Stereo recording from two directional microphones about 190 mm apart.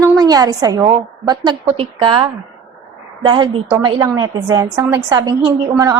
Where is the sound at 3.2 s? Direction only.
25° right (ahead or behind).